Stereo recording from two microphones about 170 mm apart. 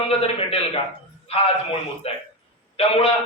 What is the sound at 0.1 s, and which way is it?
A man's voice, 35° left (ahead or behind).